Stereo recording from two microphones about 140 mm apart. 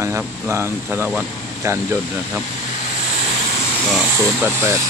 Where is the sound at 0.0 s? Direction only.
20° right (ahead or behind).